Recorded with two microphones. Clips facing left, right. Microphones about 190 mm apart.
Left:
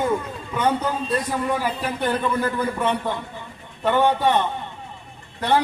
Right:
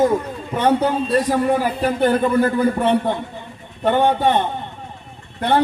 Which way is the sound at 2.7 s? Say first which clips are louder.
Right 6 dB; 30° right (ahead or behind).